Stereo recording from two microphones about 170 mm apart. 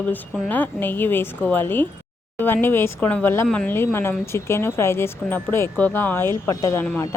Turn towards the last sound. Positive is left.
turn(degrees=10)  # may be behind; listen again after turning